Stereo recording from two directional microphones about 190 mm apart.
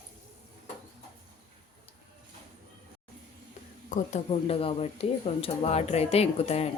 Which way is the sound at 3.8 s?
40° left (ahead or behind).